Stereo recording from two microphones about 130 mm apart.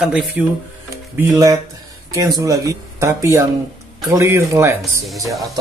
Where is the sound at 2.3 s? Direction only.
25° right (ahead or behind).